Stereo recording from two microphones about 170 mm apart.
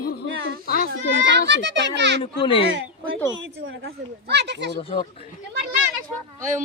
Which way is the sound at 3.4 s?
80° right.